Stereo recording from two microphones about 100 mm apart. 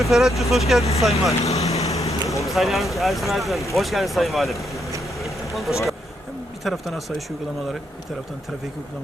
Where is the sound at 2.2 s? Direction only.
30° left (ahead or behind).